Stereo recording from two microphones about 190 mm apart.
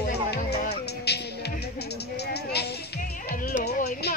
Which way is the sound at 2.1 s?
60° left (ahead or behind).